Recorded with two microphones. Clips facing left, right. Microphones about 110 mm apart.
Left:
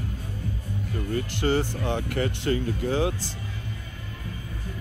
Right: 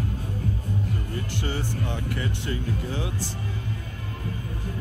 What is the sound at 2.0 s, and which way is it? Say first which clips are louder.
Speech: left 3 dB; 60° left (ahead or behind).